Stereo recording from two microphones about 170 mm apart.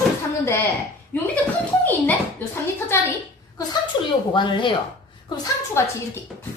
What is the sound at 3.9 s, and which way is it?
A woman's voice, 30° left (ahead or behind).